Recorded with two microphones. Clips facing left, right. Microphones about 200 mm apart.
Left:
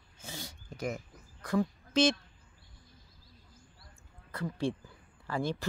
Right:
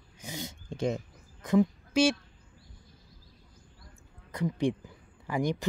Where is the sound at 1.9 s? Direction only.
10° right (ahead or behind).